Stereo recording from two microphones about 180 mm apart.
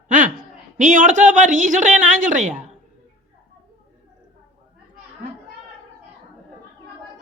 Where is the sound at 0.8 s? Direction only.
45° right (ahead or behind).